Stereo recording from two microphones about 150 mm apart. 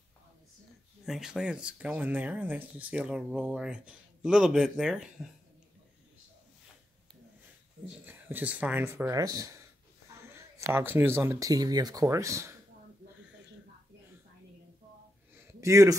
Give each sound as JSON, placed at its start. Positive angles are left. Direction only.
{"t": 1.0, "sound": "speech", "side_deg": -5}
{"t": 8.0, "sound": "speech", "side_deg": -15}
{"t": 15.6, "sound": "a man's voice", "side_deg": -20}